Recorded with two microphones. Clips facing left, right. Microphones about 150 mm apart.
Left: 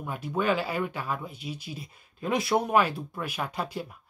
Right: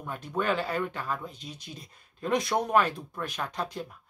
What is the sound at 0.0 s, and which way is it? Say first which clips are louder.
Speech: left 2 dB; 10° left (ahead or behind).